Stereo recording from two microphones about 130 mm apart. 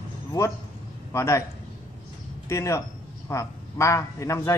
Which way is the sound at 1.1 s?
20° left (ahead or behind).